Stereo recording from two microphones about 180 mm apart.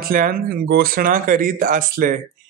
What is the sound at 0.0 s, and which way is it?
Speech, 50° right (ahead or behind).